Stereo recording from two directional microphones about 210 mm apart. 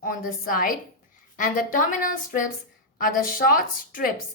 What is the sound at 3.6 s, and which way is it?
Speech, 40° left (ahead or behind).